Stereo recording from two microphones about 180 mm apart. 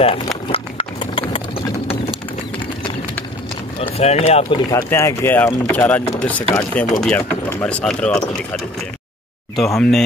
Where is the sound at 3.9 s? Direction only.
35° left (ahead or behind).